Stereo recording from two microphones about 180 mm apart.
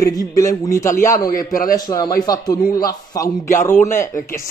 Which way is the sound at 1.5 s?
50° left (ahead or behind).